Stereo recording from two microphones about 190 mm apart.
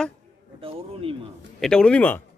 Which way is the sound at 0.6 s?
30° right (ahead or behind).